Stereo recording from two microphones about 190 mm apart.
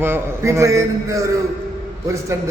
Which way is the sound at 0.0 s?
15° right (ahead or behind).